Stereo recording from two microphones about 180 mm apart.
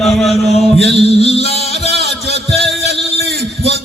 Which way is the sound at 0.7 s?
35° left (ahead or behind).